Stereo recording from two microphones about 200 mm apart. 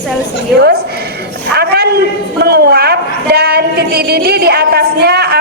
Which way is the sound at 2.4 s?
55° right (ahead or behind).